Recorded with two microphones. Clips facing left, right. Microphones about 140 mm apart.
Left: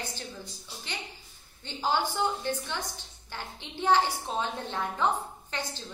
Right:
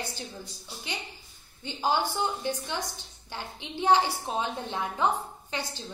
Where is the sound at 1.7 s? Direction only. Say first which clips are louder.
Right 2 dB; 15° right (ahead or behind).